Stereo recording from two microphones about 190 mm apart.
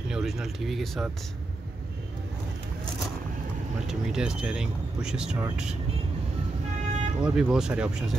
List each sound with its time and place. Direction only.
0.1 s speech: centre (ahead or behind)
3.8 s speech: 5° right (ahead or behind)
6.9 s music: 40° right (ahead or behind)
7.2 s speech: 5° right (ahead or behind)